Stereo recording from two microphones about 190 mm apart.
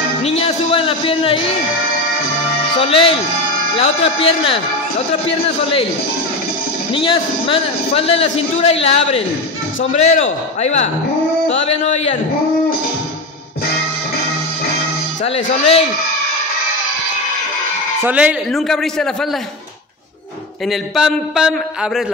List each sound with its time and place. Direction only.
0.2 s speech: 30° left (ahead or behind)
2.8 s a man's voice: 30° left (ahead or behind)
6.9 s a man's voice: 30° left (ahead or behind)
18.0 s a man's voice: 5° right (ahead or behind)
20.6 s a man's voice: centre (ahead or behind)